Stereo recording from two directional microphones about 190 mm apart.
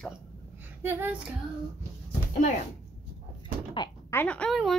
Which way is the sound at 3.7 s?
25° left (ahead or behind).